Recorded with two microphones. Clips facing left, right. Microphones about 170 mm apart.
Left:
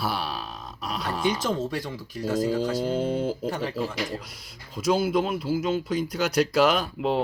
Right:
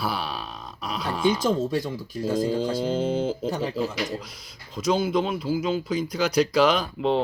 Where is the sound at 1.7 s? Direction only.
20° right (ahead or behind).